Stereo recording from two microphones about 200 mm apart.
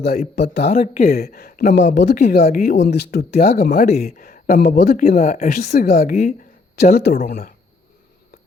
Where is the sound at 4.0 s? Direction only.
50° left (ahead or behind).